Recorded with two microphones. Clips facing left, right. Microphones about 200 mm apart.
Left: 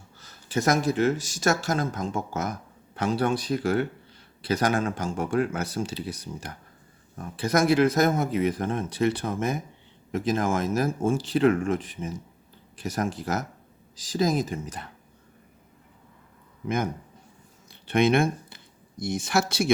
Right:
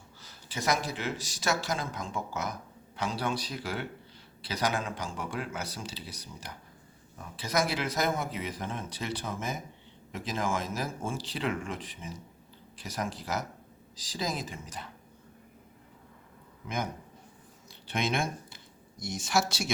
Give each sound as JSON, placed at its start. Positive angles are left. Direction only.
{"t": 0.2, "sound": "speech", "side_deg": 50}
{"t": 16.6, "sound": "speech", "side_deg": 55}